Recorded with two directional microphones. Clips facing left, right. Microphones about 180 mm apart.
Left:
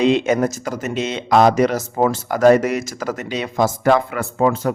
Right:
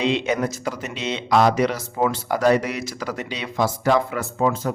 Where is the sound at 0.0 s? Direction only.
45° left (ahead or behind).